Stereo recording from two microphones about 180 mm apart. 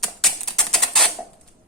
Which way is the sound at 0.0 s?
Centre (ahead or behind).